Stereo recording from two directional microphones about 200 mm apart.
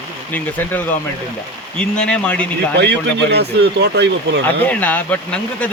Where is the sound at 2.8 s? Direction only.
55° right (ahead or behind).